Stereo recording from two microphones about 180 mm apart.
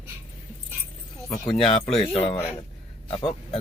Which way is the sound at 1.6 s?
35° left (ahead or behind).